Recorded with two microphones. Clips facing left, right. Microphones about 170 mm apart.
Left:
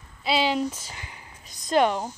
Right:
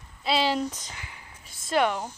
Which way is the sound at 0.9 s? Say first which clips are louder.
Left 1 dB; 25° left (ahead or behind).